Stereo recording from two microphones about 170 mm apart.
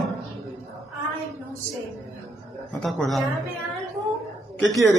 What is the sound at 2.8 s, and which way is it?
Speech, centre (ahead or behind).